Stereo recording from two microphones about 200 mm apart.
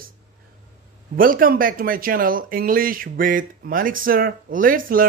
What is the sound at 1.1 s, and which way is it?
Speech, 45° right (ahead or behind).